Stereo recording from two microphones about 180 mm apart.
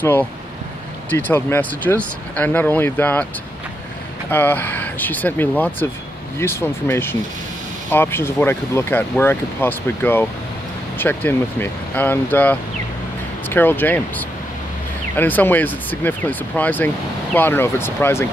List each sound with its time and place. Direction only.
0.0 s speech: 10° left (ahead or behind)
4.3 s speech: 10° left (ahead or behind)